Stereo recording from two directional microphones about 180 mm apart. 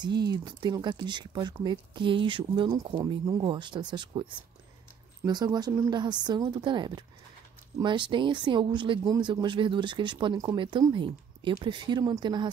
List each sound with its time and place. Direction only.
0.0 s speech: 25° right (ahead or behind)